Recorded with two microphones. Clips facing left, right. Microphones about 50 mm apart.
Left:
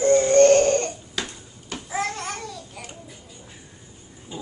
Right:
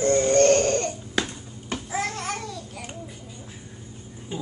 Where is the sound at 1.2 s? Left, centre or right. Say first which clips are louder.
Right 5 dB; right.